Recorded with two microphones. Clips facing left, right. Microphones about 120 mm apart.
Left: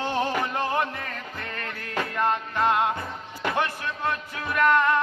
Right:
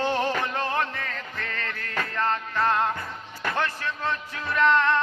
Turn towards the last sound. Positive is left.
turn(degrees=10)  # may be behind; listen again after turning